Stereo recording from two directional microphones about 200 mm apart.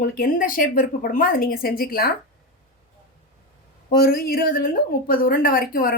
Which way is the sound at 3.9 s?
50° left (ahead or behind).